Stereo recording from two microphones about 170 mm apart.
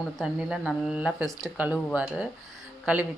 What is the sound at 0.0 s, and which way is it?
Speech, 5° right (ahead or behind).